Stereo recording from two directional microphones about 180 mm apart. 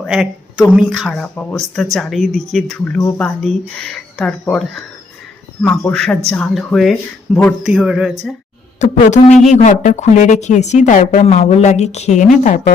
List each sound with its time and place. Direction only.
0.0 s speech: 5° right (ahead or behind)
8.8 s a woman's voice: 40° left (ahead or behind)